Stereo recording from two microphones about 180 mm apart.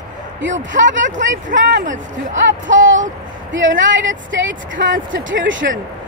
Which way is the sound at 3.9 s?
90° right.